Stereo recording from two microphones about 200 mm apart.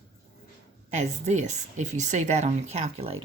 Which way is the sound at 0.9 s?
35° right (ahead or behind).